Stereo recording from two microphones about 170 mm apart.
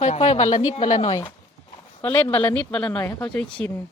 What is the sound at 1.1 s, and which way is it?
Speech, 25° left (ahead or behind).